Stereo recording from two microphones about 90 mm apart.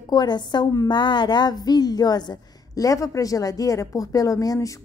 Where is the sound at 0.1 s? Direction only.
50° left (ahead or behind).